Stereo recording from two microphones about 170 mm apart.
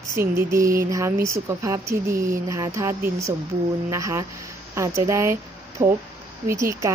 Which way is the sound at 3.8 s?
20° right (ahead or behind).